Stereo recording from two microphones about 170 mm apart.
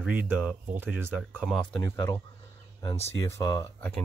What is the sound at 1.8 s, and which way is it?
Speech, 20° left (ahead or behind).